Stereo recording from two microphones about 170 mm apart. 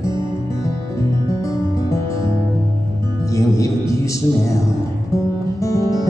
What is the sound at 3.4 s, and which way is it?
Music, 20° left (ahead or behind).